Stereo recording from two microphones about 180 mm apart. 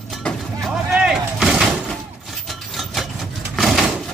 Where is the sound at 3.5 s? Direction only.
Centre (ahead or behind).